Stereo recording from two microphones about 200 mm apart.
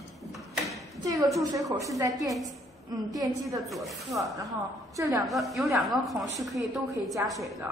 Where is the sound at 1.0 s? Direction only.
15° right (ahead or behind).